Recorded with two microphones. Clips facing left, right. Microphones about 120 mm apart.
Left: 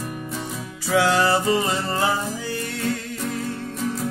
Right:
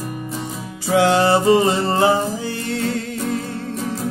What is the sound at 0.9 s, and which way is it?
Music, 25° right (ahead or behind).